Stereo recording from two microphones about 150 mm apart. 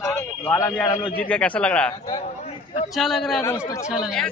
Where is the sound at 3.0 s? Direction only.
Centre (ahead or behind).